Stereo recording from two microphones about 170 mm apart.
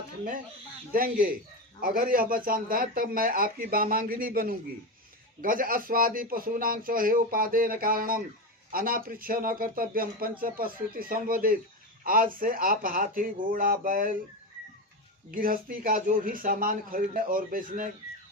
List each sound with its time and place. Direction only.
0.9 s speech: 55° right (ahead or behind)
15.3 s speech: 55° right (ahead or behind)